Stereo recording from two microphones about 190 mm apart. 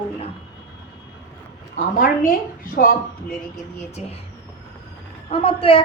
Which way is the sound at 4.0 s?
35° left (ahead or behind).